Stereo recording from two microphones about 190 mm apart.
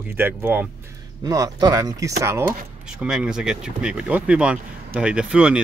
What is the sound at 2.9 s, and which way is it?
Speech, 5° right (ahead or behind).